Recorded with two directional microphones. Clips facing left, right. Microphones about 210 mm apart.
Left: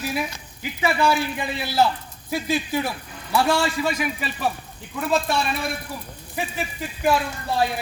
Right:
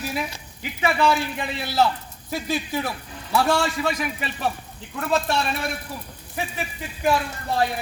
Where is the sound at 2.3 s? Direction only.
Centre (ahead or behind).